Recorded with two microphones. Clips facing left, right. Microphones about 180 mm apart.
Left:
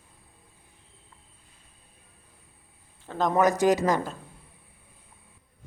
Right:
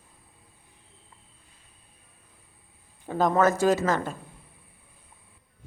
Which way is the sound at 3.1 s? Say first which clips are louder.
Right 3 dB; 5° right (ahead or behind).